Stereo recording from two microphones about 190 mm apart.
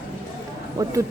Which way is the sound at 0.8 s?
15° right (ahead or behind).